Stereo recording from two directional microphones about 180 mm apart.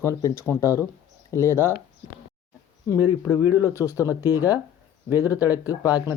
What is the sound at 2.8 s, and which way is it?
Speech, 15° left (ahead or behind).